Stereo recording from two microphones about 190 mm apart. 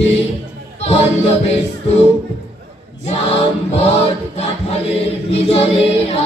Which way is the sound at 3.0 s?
30° left (ahead or behind).